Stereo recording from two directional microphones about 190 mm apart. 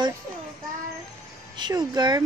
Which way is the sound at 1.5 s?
20° right (ahead or behind).